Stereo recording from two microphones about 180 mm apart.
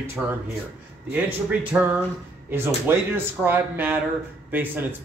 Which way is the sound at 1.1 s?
10° right (ahead or behind).